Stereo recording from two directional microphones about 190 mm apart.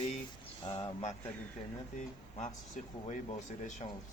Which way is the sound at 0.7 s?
35° left (ahead or behind).